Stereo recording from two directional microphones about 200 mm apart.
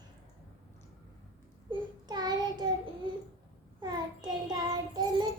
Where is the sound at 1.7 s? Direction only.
20° right (ahead or behind).